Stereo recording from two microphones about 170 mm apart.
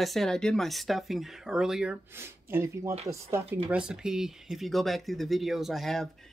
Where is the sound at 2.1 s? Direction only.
15° right (ahead or behind).